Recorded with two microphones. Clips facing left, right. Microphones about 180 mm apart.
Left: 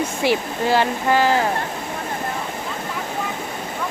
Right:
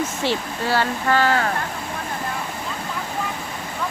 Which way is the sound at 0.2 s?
15° left (ahead or behind).